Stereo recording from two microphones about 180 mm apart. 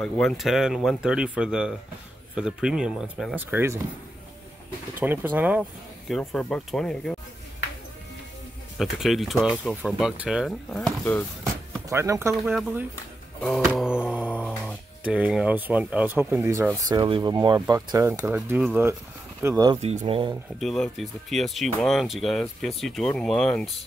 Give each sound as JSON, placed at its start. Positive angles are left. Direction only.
{"t": 0.0, "sound": "speech", "side_deg": 0}
{"t": 3.4, "sound": "speech", "side_deg": -15}
{"t": 5.0, "sound": "speech", "side_deg": -10}
{"t": 8.7, "sound": "speech", "side_deg": 0}
{"t": 11.9, "sound": "speech", "side_deg": -15}
{"t": 12.4, "sound": "speech", "side_deg": 0}
{"t": 19.4, "sound": "speech", "side_deg": -20}
{"t": 19.8, "sound": "speech", "side_deg": -35}
{"t": 20.6, "sound": "speech", "side_deg": 0}